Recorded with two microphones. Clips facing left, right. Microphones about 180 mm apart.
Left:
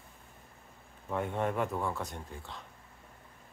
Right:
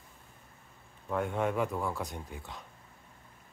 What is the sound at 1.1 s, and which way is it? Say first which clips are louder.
Speech: right 1 dB; centre (ahead or behind).